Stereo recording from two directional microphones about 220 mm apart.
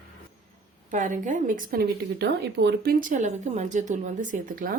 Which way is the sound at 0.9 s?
35° right (ahead or behind).